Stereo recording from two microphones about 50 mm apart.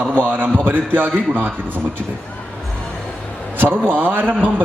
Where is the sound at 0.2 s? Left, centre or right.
Right.